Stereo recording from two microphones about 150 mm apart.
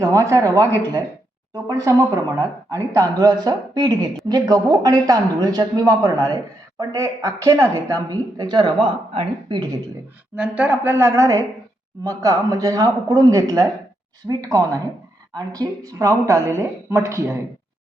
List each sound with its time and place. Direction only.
0.0 s speech: 20° right (ahead or behind)
1.6 s speech: 20° right (ahead or behind)
10.3 s a woman's voice: 10° right (ahead or behind)